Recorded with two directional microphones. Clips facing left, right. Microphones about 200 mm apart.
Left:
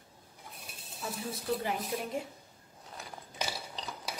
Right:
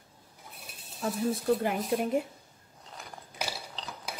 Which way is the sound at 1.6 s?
55° right (ahead or behind).